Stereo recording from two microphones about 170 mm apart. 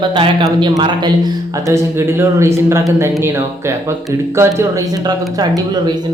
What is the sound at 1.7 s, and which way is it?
Speech, 15° right (ahead or behind).